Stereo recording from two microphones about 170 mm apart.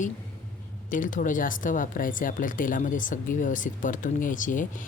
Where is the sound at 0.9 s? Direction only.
50° left (ahead or behind).